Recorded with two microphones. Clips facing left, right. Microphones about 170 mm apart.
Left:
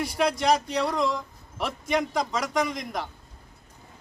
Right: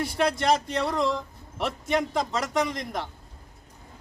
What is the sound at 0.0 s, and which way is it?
A man's voice, centre (ahead or behind).